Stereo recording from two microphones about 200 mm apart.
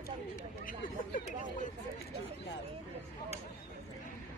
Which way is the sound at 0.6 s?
40° left (ahead or behind).